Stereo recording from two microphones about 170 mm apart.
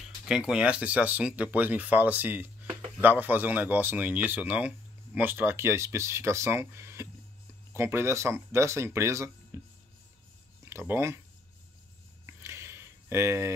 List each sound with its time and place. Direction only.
0.0 s speech: 5° right (ahead or behind)
10.6 s speech: 15° right (ahead or behind)
12.3 s a sound: 15° right (ahead or behind)